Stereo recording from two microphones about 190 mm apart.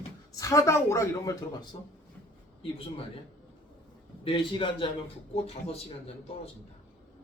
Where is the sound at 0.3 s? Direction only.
15° left (ahead or behind).